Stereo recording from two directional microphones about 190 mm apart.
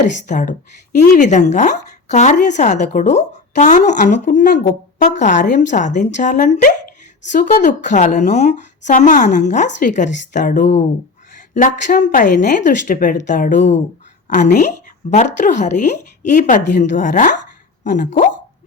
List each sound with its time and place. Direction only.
0.3 s a woman's voice: 45° left (ahead or behind)